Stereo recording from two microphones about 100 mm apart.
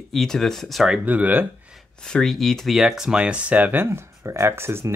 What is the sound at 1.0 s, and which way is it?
Speech, 15° right (ahead or behind).